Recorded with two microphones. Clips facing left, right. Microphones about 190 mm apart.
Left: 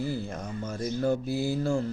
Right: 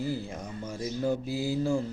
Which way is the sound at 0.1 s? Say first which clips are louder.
Left 1 dB; 15° right (ahead or behind).